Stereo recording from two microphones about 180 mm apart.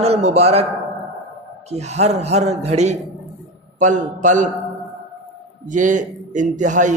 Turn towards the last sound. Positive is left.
turn(degrees=-45)  # may be behind; listen again after turning